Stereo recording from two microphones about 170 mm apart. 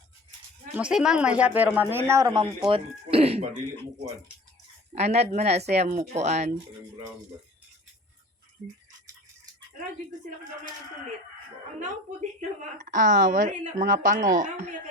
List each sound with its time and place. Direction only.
0.7 s speech: 5° right (ahead or behind); by 2.5 s 25° right (ahead or behind)
2.6 s speech: 35° right (ahead or behind)
4.9 s speech: 40° right (ahead or behind)
12.4 s a woman's voice: 50° right (ahead or behind)